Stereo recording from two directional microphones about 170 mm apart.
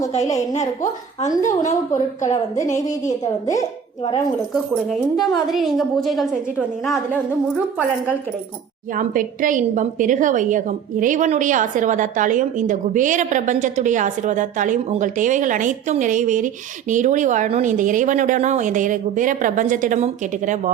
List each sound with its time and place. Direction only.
0.5 s a woman's voice: 45° left (ahead or behind)
3.4 s speech: 20° left (ahead or behind)
4.5 s speech: centre (ahead or behind)
9.0 s a woman's voice: 50° right (ahead or behind)